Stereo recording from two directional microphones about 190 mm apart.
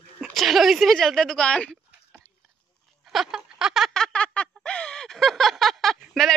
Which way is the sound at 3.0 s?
Centre (ahead or behind).